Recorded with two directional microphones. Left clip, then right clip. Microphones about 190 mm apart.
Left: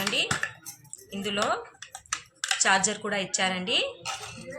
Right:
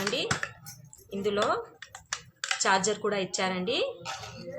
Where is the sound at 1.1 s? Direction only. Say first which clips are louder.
Right 2 dB; 55° right (ahead or behind).